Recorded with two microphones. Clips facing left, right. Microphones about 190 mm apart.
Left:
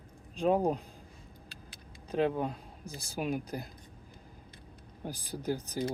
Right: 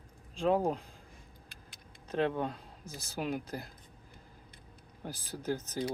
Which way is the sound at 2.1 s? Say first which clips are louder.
Left 2 dB; 10° left (ahead or behind).